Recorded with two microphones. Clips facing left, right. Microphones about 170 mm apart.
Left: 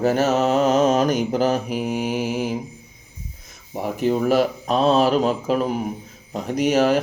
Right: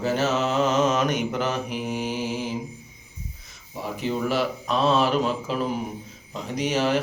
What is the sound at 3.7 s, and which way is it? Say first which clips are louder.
Speech: left 6 dB; 45° left (ahead or behind).